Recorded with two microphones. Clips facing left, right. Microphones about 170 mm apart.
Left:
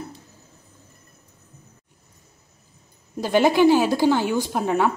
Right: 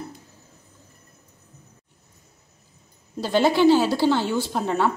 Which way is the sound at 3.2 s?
15° left (ahead or behind).